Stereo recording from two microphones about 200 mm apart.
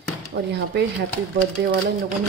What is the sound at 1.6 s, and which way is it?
Speech, 55° right (ahead or behind).